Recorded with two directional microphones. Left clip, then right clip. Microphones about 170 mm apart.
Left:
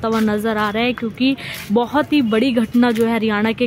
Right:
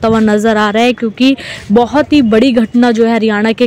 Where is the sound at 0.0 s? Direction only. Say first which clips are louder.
Right 8 dB; 30° right (ahead or behind).